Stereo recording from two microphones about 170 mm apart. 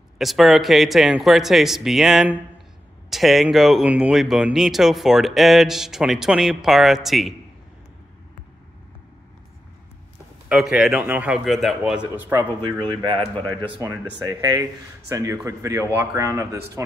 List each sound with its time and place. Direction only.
0.2 s speech: centre (ahead or behind)
10.5 s speech: 5° right (ahead or behind)
12.2 s speech: 20° right (ahead or behind)
13.8 s speech: 20° right (ahead or behind)